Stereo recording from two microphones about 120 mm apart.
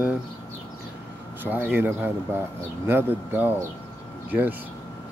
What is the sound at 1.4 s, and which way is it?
Speech, 15° right (ahead or behind).